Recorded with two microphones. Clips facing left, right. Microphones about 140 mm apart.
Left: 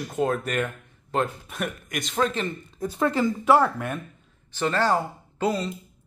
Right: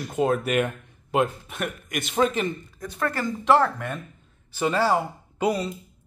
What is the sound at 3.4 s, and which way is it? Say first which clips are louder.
Speech: right 1 dB; 10° left (ahead or behind).